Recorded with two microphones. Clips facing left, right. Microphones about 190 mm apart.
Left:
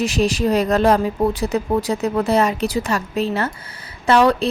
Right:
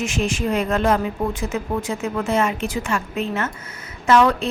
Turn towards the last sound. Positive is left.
turn(degrees=35)  # may be behind; listen again after turning